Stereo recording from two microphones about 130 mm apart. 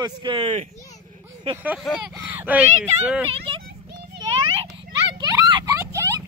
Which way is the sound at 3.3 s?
45° right (ahead or behind).